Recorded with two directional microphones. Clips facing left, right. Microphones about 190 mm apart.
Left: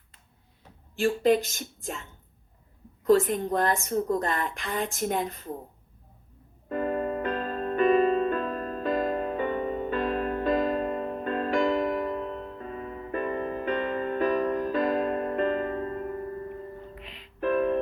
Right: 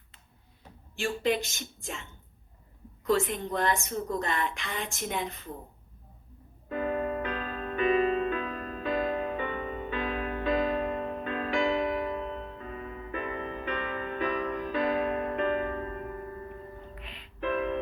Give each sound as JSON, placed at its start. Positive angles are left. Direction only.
{"t": 0.9, "sound": "a woman's voice", "side_deg": 45}
{"t": 6.7, "sound": "music", "side_deg": 45}
{"t": 17.4, "sound": "music", "side_deg": 40}